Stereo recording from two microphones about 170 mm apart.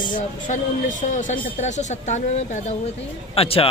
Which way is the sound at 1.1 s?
45° left (ahead or behind).